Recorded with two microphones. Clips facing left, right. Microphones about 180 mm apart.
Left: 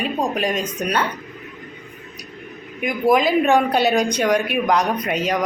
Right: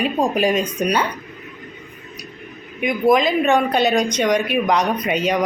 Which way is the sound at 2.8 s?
5° left (ahead or behind).